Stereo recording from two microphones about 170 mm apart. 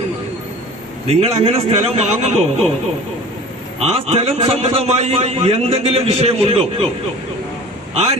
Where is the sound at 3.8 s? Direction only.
35° right (ahead or behind).